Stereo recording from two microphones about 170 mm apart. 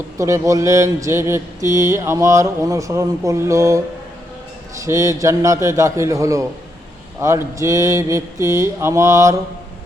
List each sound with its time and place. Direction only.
0.2 s mantra: 20° right (ahead or behind)
4.8 s a man's voice: 20° right (ahead or behind)
7.2 s mantra: 15° right (ahead or behind)